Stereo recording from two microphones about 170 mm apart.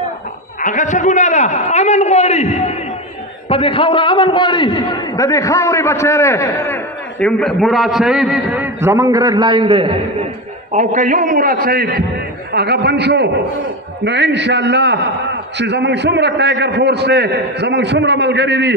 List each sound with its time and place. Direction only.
0.6 s a man's voice: 50° left (ahead or behind); by 8.6 s 5° right (ahead or behind)
8.8 s a man's voice: 20° right (ahead or behind)
10.7 s a man's voice: 45° right (ahead or behind)
12.5 s a man's voice: 75° right (ahead or behind)